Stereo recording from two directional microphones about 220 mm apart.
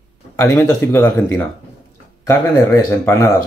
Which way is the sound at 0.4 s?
10° left (ahead or behind).